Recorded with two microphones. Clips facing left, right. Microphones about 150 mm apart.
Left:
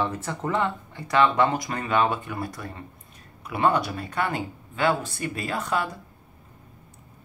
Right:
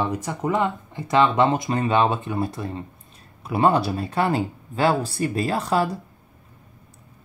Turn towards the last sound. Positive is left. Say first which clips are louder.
# right 5 dB
turn(degrees=-35)  # may be behind; listen again after turning